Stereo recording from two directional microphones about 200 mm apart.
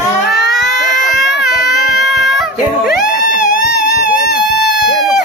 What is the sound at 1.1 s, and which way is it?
Baby cry, centre (ahead or behind).